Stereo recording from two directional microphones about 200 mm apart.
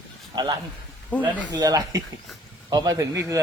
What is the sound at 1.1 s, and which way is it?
Speech, 5° left (ahead or behind).